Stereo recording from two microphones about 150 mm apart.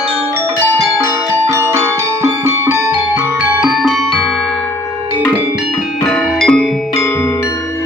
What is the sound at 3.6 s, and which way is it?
Music, centre (ahead or behind).